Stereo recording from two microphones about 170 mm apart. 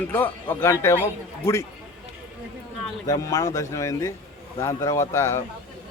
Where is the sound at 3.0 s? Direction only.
20° left (ahead or behind).